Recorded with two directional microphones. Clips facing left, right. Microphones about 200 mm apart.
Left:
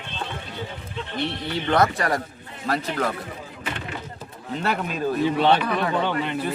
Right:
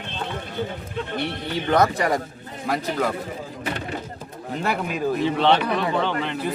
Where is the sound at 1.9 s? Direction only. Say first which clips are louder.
Right 2 dB; 20° right (ahead or behind).